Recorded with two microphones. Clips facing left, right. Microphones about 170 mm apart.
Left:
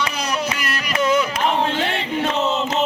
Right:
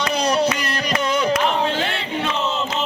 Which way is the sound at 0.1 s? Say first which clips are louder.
Right 5 dB; 35° right (ahead or behind).